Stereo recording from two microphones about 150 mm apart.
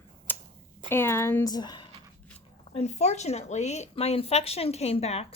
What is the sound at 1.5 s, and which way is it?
Speech, 25° left (ahead or behind).